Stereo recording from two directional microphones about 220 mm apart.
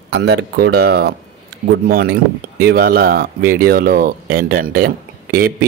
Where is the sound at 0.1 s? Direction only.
45° right (ahead or behind).